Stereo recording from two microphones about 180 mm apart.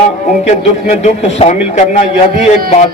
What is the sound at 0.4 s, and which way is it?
Speech, 40° left (ahead or behind).